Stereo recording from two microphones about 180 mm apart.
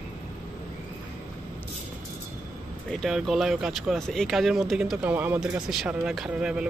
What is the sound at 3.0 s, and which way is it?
Speech, centre (ahead or behind).